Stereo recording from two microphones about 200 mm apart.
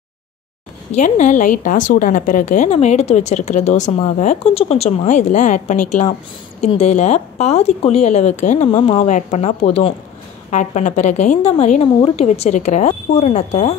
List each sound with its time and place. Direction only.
0.9 s a woman's voice: 35° left (ahead or behind)